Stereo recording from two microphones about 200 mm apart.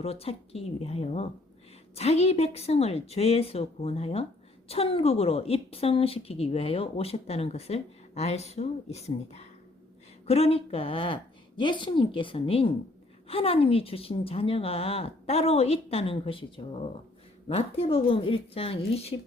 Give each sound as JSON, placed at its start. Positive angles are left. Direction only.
{"t": 0.0, "sound": "a woman's voice", "side_deg": 30}
{"t": 17.5, "sound": "a woman's voice", "side_deg": 30}